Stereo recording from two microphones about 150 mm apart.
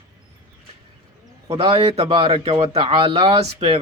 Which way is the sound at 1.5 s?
35° right (ahead or behind).